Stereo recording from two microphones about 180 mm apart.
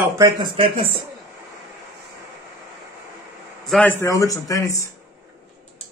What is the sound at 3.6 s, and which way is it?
Speech, 5° left (ahead or behind).